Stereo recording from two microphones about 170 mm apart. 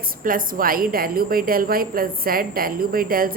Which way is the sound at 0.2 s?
55° right (ahead or behind).